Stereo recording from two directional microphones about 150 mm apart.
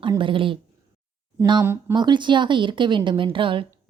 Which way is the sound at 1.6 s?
15° right (ahead or behind).